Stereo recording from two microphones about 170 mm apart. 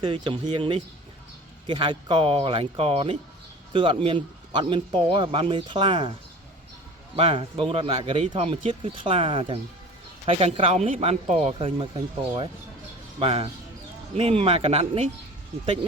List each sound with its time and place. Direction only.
0.0 s speech: 30° right (ahead or behind)
7.2 s speech: 30° right (ahead or behind)